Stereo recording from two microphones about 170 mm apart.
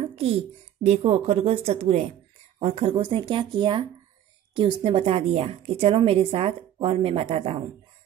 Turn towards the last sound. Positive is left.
turn(degrees=-35)  # may be behind; listen again after turning